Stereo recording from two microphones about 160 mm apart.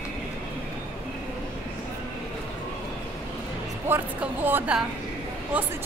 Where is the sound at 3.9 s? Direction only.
10° right (ahead or behind).